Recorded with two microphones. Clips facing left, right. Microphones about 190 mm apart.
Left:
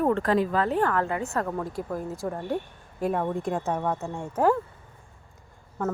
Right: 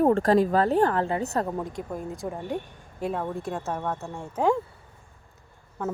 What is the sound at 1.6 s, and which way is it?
Speech, centre (ahead or behind).